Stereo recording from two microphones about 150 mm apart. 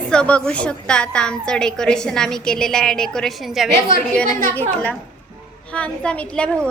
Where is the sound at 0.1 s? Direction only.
5° left (ahead or behind).